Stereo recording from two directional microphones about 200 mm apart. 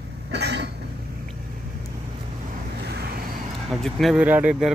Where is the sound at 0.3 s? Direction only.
55° right (ahead or behind).